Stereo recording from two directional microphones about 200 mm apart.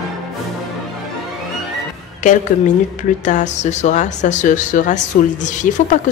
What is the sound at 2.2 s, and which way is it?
A woman's voice, 40° left (ahead or behind).